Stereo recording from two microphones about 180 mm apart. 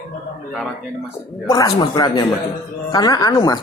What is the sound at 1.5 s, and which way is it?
Speech, 20° left (ahead or behind).